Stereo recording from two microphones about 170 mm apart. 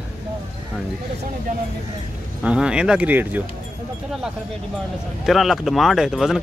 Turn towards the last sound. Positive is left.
turn(degrees=0)  # may be behind; listen again after turning